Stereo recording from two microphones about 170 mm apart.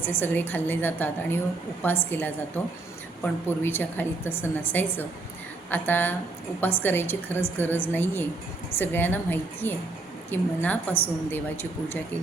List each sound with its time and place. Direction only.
0.0 s a woman's voice: 10° left (ahead or behind)